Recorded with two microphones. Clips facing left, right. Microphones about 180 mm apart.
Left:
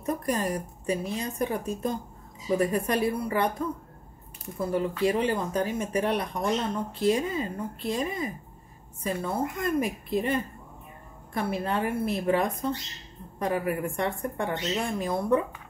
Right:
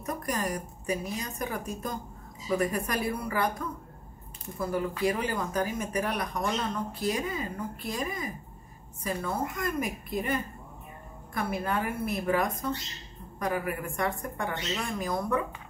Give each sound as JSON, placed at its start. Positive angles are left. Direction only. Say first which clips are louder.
{"t": 0.0, "sound": "speech", "louder": "left 4 dB", "side_deg": 30}